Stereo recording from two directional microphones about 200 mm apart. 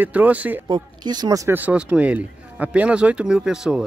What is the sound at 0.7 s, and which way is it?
Speech, 20° right (ahead or behind).